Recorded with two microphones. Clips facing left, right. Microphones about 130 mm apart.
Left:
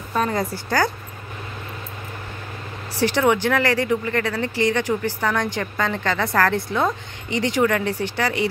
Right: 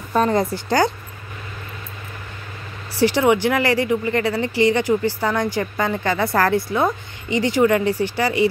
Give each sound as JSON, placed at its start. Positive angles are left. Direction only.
{"t": 0.1, "sound": "a woman's voice", "side_deg": -25}
{"t": 3.0, "sound": "speech", "side_deg": -10}